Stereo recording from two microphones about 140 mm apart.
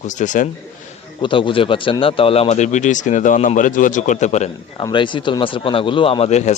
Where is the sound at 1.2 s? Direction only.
35° left (ahead or behind); by 4.5 s 55° left (ahead or behind).